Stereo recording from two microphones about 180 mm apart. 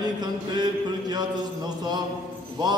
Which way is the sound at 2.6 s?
25° right (ahead or behind).